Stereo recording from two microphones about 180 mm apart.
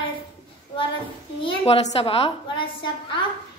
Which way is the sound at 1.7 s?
30° left (ahead or behind).